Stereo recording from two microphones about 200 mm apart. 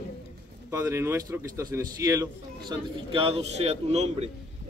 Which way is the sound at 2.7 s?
25° right (ahead or behind).